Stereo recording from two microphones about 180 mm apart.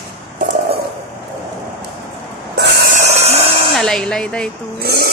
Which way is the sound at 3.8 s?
5° left (ahead or behind).